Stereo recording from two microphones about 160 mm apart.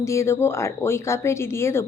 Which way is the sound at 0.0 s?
20° left (ahead or behind).